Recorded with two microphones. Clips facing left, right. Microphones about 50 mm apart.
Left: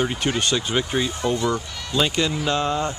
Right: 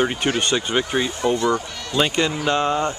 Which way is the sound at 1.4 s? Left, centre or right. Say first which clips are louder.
Right 3 dB; centre.